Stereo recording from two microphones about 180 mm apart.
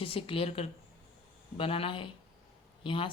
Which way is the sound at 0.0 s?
30° left (ahead or behind).